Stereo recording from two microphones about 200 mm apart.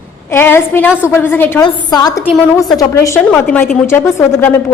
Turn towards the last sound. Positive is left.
turn(degrees=10)  # may be behind; listen again after turning